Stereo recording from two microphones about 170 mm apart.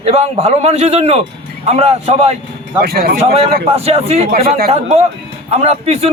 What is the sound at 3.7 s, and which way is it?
A man's voice, 35° right (ahead or behind).